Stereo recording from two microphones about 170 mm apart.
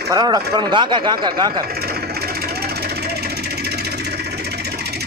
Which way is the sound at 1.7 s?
65° right (ahead or behind).